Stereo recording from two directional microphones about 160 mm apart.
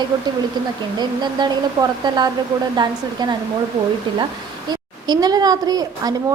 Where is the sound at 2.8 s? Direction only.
25° right (ahead or behind).